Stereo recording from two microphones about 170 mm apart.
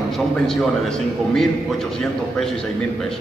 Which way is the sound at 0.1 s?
Centre (ahead or behind).